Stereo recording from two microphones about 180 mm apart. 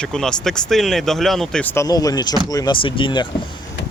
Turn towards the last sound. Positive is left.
turn(degrees=25)  # may be behind; listen again after turning